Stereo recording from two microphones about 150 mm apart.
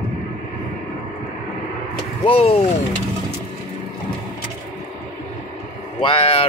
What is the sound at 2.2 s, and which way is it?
Speech, 40° left (ahead or behind).